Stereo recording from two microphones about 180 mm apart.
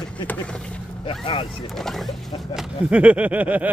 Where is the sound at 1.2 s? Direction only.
30° left (ahead or behind).